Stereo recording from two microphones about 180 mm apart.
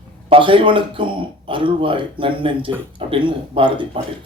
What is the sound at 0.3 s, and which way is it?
Speech, 30° right (ahead or behind).